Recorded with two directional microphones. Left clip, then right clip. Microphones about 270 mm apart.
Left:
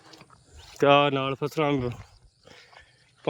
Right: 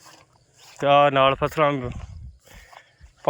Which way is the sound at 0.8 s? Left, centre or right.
Centre.